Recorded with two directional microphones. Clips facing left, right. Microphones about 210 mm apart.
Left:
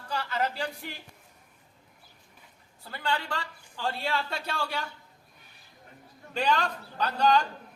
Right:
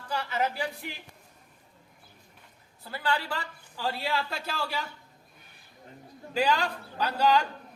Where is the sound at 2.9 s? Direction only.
5° right (ahead or behind).